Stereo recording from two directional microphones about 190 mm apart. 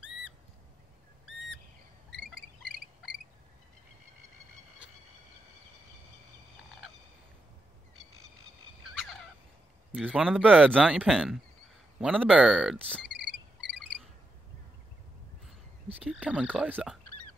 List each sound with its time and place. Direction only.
0.0 s a sound: 5° right (ahead or behind)
8.9 s turkey: centre (ahead or behind)
10.0 s speech: 5° right (ahead or behind)
13.2 s frog: 65° right (ahead or behind)
15.4 s speech: 5° right (ahead or behind)